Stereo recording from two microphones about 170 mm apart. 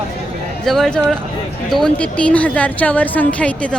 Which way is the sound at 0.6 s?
5° left (ahead or behind).